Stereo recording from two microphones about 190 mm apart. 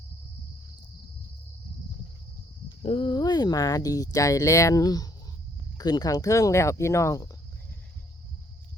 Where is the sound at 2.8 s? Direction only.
30° left (ahead or behind).